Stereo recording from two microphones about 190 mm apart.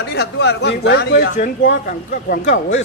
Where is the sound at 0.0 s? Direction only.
65° left (ahead or behind).